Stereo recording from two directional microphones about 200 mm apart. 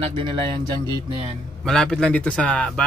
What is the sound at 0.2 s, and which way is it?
Speech, 25° right (ahead or behind).